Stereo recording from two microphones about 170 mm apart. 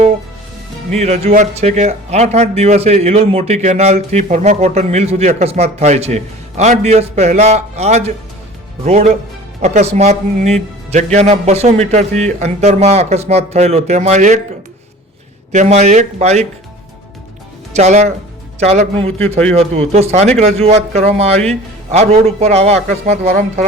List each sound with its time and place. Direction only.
0.9 s speech: 40° right (ahead or behind)
15.5 s speech: 40° right (ahead or behind)
17.7 s speech: 40° right (ahead or behind)